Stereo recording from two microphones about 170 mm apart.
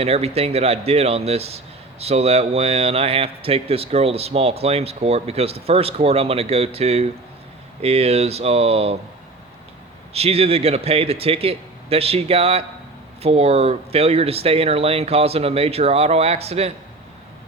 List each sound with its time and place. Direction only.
0.0 s speech: 35° right (ahead or behind)
10.1 s speech: 35° right (ahead or behind)